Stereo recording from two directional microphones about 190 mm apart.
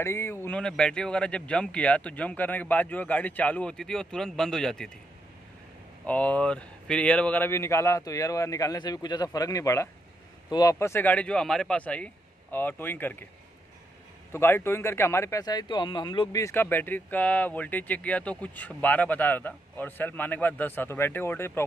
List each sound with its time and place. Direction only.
0.0 s speech: 15° left (ahead or behind)
6.0 s speech: 5° left (ahead or behind)
14.3 s speech: 10° left (ahead or behind)